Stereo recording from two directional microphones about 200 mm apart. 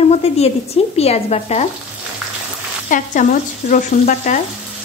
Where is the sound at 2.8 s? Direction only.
40° left (ahead or behind).